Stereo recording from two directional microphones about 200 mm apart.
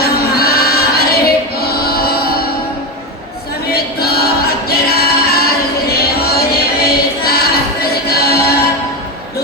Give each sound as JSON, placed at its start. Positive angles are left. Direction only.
{"t": 0.0, "sound": "a sound", "side_deg": 50}
{"t": 1.5, "sound": "chant", "side_deg": 50}
{"t": 3.7, "sound": "a capella", "side_deg": 50}
{"t": 5.9, "sound": "music", "side_deg": 50}